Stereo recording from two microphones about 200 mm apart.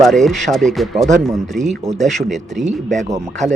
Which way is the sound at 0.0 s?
Centre (ahead or behind).